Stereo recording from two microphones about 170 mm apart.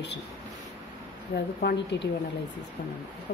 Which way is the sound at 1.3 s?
75° left (ahead or behind).